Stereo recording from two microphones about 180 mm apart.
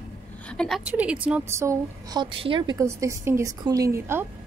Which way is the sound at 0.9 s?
5° right (ahead or behind).